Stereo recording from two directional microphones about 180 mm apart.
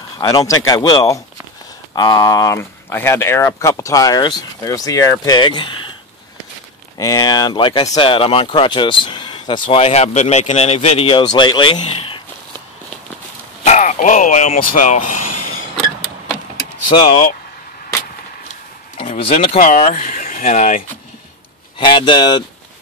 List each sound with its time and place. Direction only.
0.2 s speech: 20° left (ahead or behind)
7.0 s speech: 20° left (ahead or behind)
13.7 s speech: 45° left (ahead or behind)
16.9 s speech: 40° left (ahead or behind)
18.5 s a sound: 35° left (ahead or behind)
19.6 s speech: 45° left (ahead or behind)
21.7 s speech: 25° left (ahead or behind)